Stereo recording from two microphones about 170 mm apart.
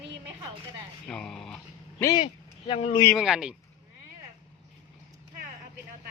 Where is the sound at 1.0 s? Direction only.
5° left (ahead or behind).